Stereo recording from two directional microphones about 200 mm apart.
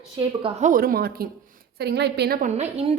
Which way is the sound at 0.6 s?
45° right (ahead or behind).